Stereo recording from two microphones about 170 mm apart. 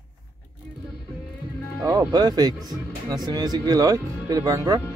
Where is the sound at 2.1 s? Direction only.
25° right (ahead or behind).